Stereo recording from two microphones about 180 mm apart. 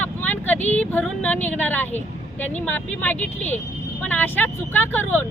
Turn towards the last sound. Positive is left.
turn(degrees=10)  # may be behind; listen again after turning